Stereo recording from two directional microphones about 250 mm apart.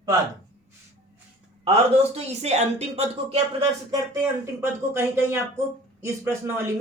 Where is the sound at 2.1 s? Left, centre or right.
Right.